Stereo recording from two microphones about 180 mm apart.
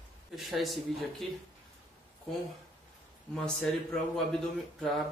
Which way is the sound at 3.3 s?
5° left (ahead or behind).